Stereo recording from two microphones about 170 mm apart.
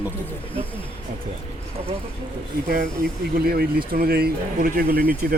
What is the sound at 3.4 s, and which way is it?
Speech, 65° right (ahead or behind).